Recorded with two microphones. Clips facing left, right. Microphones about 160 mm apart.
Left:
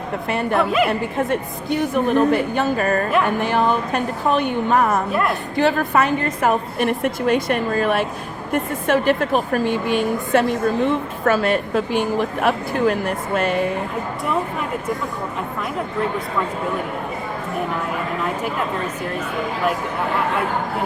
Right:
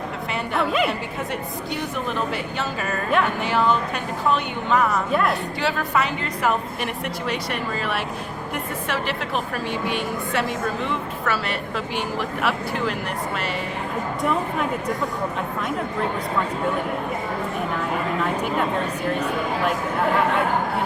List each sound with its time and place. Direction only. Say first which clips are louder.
0.3 s a woman's voice: left 5 dB; 50° left (ahead or behind)